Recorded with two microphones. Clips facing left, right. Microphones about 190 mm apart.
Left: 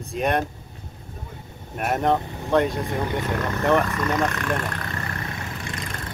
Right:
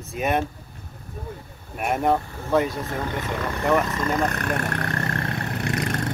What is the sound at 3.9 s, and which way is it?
Speech, 30° right (ahead or behind).